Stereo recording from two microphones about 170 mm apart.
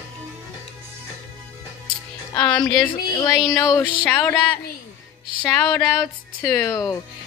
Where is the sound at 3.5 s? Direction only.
20° left (ahead or behind).